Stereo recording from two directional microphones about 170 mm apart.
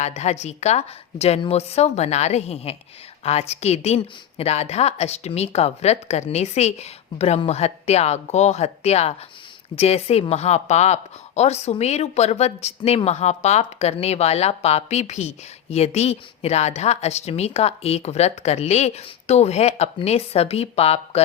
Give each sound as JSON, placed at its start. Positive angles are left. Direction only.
{"t": 0.0, "sound": "a woman's voice", "side_deg": 40}